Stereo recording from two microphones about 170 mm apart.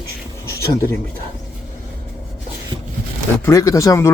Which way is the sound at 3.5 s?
20° left (ahead or behind).